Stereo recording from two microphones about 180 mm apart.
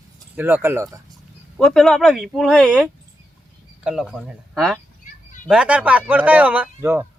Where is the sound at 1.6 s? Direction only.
Centre (ahead or behind).